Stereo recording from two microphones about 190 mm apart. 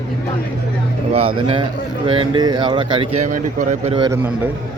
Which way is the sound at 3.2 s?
40° right (ahead or behind).